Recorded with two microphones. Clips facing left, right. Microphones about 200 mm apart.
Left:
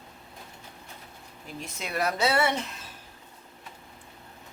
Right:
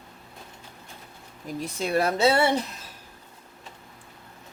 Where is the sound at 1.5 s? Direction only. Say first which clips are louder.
Right 7 dB; 35° right (ahead or behind).